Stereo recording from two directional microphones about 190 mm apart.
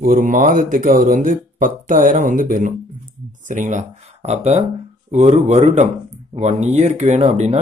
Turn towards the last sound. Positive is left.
turn(degrees=-35)  # may be behind; listen again after turning